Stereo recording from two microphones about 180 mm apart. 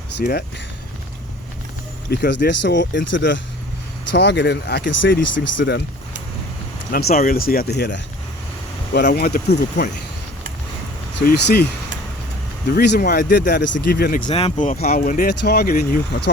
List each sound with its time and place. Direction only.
0.2 s speech: 60° left (ahead or behind)
2.0 s speech: 70° left (ahead or behind); by 3.4 s 85° left
4.1 s speech: 75° left (ahead or behind)
6.9 s speech: 55° left (ahead or behind)
11.3 s speech: 65° left (ahead or behind)
12.7 s speech: 65° left (ahead or behind)
14.3 s speech: 35° left (ahead or behind)
14.8 s speech: 55° left (ahead or behind)
15.3 s speech: 65° left (ahead or behind)